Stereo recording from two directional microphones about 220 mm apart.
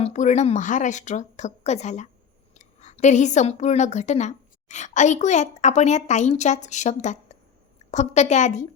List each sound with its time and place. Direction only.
0.0 s a woman's voice: 35° left (ahead or behind)